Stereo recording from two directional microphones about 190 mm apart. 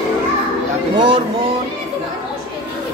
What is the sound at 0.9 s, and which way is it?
Speech, 30° right (ahead or behind).